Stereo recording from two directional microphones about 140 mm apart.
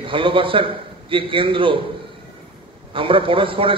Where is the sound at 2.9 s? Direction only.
40° right (ahead or behind).